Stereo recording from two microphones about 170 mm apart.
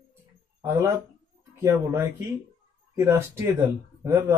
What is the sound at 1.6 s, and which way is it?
Speech, 15° right (ahead or behind).